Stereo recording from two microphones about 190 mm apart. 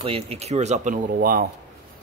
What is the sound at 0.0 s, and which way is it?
Speech, 30° right (ahead or behind).